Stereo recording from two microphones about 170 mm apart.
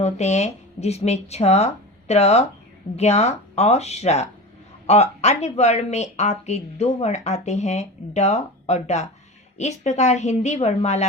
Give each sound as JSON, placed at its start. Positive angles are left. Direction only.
{"t": 0.0, "sound": "speech", "side_deg": 40}